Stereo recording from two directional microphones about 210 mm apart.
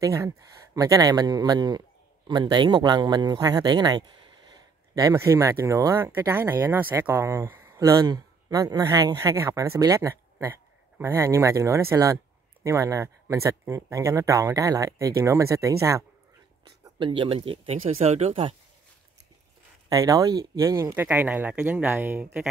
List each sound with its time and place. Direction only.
0.0 s speech: 15° right (ahead or behind)
19.9 s speech: 15° right (ahead or behind)